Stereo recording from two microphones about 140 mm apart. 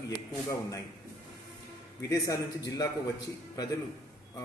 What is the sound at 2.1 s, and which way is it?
A man's voice, 25° left (ahead or behind).